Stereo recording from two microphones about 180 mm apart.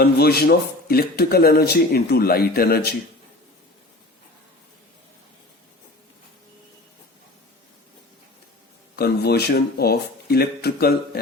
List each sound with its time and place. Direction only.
0.0 s speech: 60° left (ahead or behind)
9.0 s speech: 65° left (ahead or behind)